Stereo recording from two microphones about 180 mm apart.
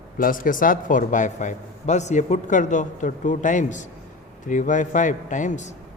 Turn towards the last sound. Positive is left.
turn(degrees=45)  # may be behind; listen again after turning